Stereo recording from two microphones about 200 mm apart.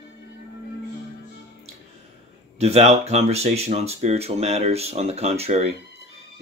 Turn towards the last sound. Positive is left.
turn(degrees=-30)  # may be behind; listen again after turning